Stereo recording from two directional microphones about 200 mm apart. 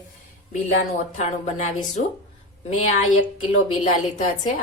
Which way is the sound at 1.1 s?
35° left (ahead or behind).